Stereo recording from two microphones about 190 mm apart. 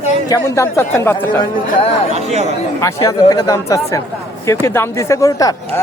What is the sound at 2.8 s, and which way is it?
Speech, 15° left (ahead or behind).